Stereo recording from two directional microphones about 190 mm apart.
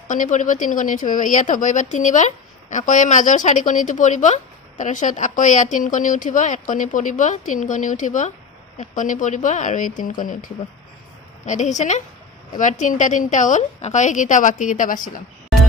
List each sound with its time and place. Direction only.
0.1 s a woman's voice: 40° left (ahead or behind)